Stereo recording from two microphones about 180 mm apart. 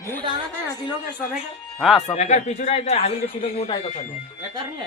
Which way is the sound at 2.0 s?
40° left (ahead or behind).